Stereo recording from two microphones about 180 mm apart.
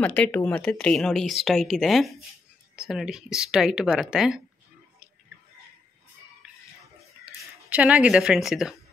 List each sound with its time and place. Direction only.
0.0 s speech: 10° left (ahead or behind)
7.2 s speech: 10° right (ahead or behind)